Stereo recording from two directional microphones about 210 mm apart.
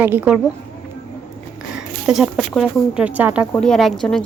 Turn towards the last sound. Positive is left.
turn(degrees=0)  # may be behind; listen again after turning